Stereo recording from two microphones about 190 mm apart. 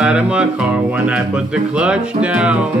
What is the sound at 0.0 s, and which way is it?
Music, 5° right (ahead or behind).